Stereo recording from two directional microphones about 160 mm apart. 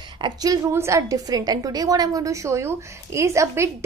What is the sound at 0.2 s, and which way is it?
A woman's voice, 25° right (ahead or behind).